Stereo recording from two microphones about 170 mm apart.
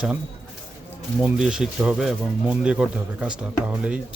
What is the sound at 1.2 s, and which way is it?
Speech, 5° right (ahead or behind).